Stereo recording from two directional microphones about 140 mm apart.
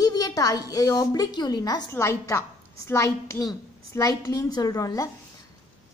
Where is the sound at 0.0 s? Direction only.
25° left (ahead or behind).